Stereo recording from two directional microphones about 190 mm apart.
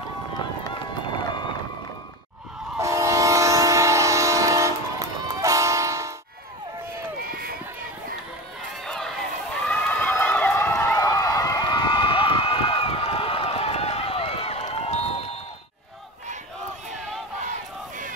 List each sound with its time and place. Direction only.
2.8 s train: 15° right (ahead or behind)
7.2 s run: 50° right (ahead or behind)
8.8 s run: centre (ahead or behind)
9.7 s a sound: 10° left (ahead or behind); by 15.2 s 35° left (ahead or behind)
17.5 s battle cry: 45° right (ahead or behind)